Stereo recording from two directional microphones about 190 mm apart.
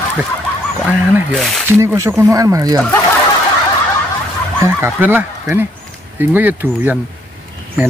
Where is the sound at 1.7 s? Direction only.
15° right (ahead or behind).